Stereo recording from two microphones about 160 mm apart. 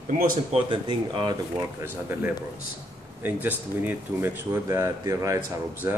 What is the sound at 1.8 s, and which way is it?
Speech, 10° right (ahead or behind).